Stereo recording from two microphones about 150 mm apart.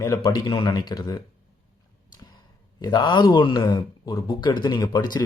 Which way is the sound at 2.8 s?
30° left (ahead or behind).